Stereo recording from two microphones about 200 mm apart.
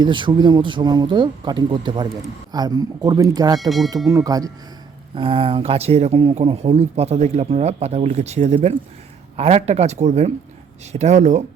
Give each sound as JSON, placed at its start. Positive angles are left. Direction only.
{"t": 0.0, "sound": "speech", "side_deg": -25}